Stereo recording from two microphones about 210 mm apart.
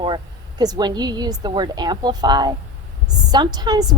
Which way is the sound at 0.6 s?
20° right (ahead or behind).